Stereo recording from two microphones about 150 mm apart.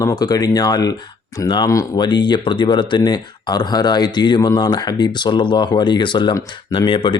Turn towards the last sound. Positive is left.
turn(degrees=35)  # may be behind; listen again after turning